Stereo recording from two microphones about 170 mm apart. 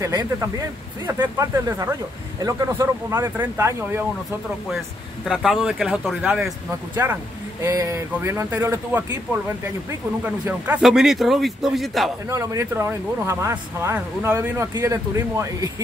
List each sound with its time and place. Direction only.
0.0 s speech: 20° right (ahead or behind)
5.2 s speech: centre (ahead or behind)
7.6 s speech: 20° right (ahead or behind); by 12.1 s centre (ahead or behind)
12.3 s speech: 20° right (ahead or behind)